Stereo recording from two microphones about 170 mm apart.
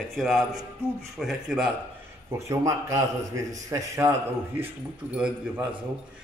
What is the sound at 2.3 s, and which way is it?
Speech, 20° right (ahead or behind).